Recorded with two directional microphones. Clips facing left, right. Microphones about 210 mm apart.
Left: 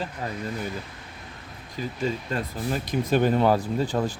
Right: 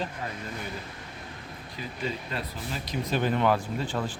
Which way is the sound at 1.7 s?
45° left (ahead or behind).